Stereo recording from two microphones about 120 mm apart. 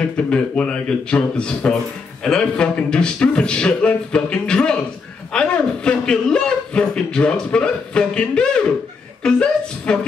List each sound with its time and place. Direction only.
0.0 s a man's voice: 10° left (ahead or behind)